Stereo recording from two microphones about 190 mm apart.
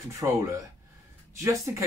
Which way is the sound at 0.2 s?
15° right (ahead or behind).